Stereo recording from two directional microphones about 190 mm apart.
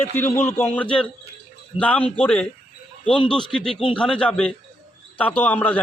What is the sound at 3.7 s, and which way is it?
Speech, 30° left (ahead or behind).